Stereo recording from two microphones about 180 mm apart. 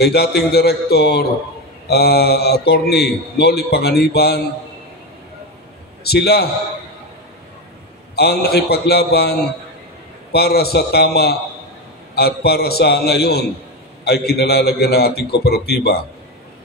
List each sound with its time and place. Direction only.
0.0 s a man's voice: 65° left (ahead or behind)
6.0 s a man's voice: 65° left (ahead or behind)
8.2 s a man's voice: 65° left (ahead or behind)